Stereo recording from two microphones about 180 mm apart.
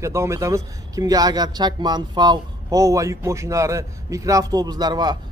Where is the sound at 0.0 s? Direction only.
15° right (ahead or behind).